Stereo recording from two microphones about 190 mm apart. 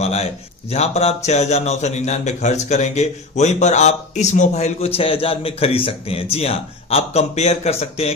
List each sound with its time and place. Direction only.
0.0 s a man's voice: 35° left (ahead or behind)